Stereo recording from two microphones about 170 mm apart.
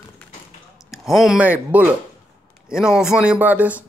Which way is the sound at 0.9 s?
Centre (ahead or behind).